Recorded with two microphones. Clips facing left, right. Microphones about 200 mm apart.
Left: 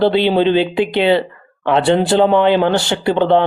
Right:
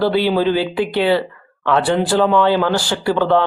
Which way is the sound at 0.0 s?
25° left (ahead or behind).